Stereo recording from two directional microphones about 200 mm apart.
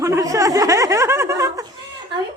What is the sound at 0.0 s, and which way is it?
Snicker, 15° right (ahead or behind).